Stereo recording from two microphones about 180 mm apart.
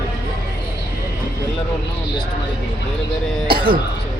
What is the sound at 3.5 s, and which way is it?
Cough, 55° right (ahead or behind).